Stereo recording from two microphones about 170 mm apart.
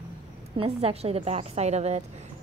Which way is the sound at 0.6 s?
35° right (ahead or behind).